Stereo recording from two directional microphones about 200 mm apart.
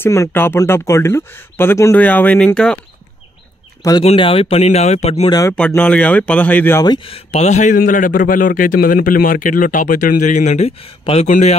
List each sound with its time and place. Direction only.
0.0 s speech: 15° left (ahead or behind)
4.0 s speech: 30° left (ahead or behind)
5.3 s speech: 15° left (ahead or behind); by 11.5 s 35° left (ahead or behind)